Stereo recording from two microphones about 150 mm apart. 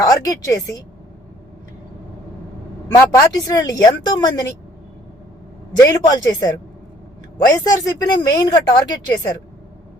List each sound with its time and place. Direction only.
0.0 s speech: 25° left (ahead or behind)
3.0 s speech: 25° left (ahead or behind)
5.8 s speech: 25° left (ahead or behind)